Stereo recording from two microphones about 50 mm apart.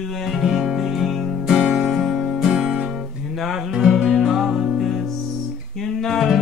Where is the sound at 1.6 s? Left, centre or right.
Centre.